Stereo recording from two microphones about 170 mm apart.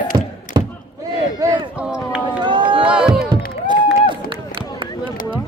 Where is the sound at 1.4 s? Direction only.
25° right (ahead or behind).